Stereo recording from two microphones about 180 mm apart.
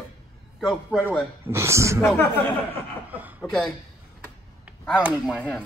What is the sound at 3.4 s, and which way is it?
Speech, centre (ahead or behind).